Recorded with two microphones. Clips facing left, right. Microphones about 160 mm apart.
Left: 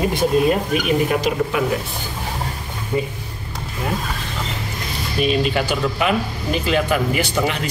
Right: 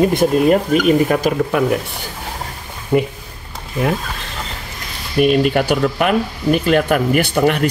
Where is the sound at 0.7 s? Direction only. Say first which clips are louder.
Right 5 dB; 50° right (ahead or behind).